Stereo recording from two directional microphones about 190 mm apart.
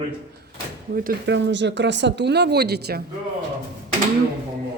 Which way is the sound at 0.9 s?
50° right (ahead or behind).